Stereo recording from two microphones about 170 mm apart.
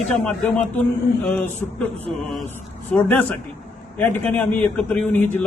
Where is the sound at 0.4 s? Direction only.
5° left (ahead or behind).